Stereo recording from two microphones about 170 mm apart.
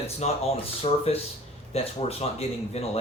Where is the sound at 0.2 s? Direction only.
35° left (ahead or behind).